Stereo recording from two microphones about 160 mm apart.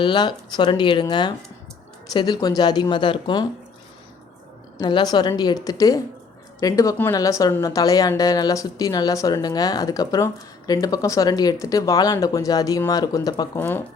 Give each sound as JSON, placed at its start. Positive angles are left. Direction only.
{"t": 0.0, "sound": "a woman's voice", "side_deg": 30}
{"t": 4.8, "sound": "a woman's voice", "side_deg": 25}